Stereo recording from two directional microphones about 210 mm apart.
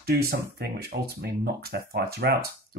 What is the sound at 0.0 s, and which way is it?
Speech, 50° right (ahead or behind).